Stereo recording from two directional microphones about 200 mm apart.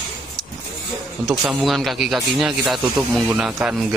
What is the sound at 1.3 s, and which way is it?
Speech, centre (ahead or behind).